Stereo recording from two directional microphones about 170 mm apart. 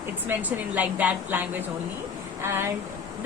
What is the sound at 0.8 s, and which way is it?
A woman's voice, 10° right (ahead or behind).